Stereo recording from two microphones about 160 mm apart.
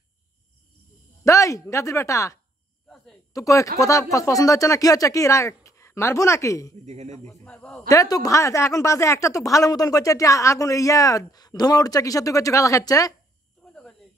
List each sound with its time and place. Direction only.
1.2 s speech: 20° left (ahead or behind)
3.3 s a woman's voice: 20° left (ahead or behind)
6.7 s speech: 45° right (ahead or behind)
7.2 s a man's voice: 5° left (ahead or behind)
7.9 s a woman's voice: 20° left (ahead or behind)
13.6 s a sound: 5° left (ahead or behind)